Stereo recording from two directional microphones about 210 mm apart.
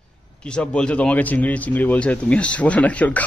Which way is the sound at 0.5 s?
5° left (ahead or behind).